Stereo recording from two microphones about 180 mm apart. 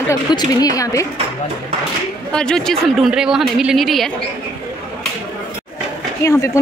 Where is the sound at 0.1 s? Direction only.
20° left (ahead or behind).